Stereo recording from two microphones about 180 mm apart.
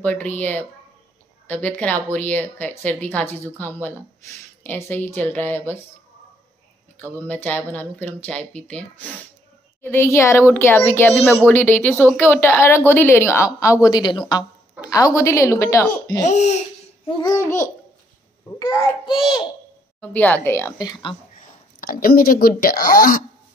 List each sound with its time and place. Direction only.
0.0 s speech: 10° left (ahead or behind)
7.2 s a woman's voice: 10° left (ahead or behind)
16.3 s speech: 40° left (ahead or behind)
17.3 s a child's voice: 15° left (ahead or behind)
20.0 s speech: 10° left (ahead or behind); by 21.2 s 25° left (ahead or behind)
21.4 s speech: 50° left (ahead or behind)